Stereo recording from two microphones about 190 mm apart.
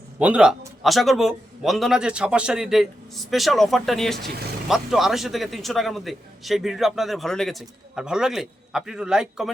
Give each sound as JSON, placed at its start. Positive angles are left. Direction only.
{"t": 0.2, "sound": "a man's voice", "side_deg": -5}